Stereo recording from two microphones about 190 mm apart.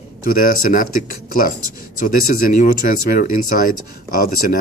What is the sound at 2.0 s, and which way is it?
Speech, 50° left (ahead or behind).